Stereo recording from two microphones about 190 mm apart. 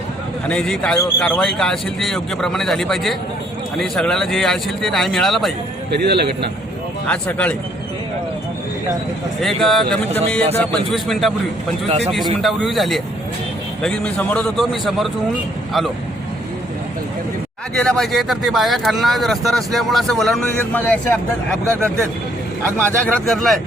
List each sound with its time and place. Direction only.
0.4 s speech: 5° left (ahead or behind)
5.9 s a man's voice: 60° right (ahead or behind)
7.1 s speech: 5° left (ahead or behind)
9.4 s speech: centre (ahead or behind)
11.9 s speech: 35° right (ahead or behind)
12.4 s speech: centre (ahead or behind)
17.7 s speech: 5° left (ahead or behind)
23.0 s speech: 5° left (ahead or behind)